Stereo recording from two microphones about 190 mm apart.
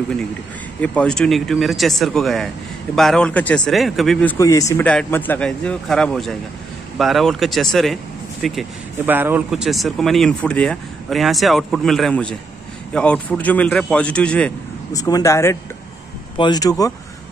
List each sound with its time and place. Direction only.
0.7 s speech: 5° left (ahead or behind)
14.9 s speech: 20° left (ahead or behind)